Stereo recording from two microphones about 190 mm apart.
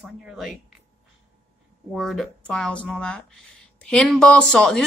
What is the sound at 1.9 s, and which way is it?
Speech, centre (ahead or behind).